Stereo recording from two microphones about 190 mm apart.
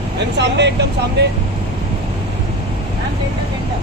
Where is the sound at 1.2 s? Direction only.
60° right (ahead or behind).